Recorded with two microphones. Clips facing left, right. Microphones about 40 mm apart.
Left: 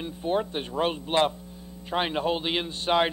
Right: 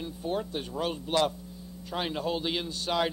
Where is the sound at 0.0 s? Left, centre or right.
Left.